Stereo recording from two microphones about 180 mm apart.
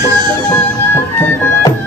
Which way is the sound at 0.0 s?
25° right (ahead or behind).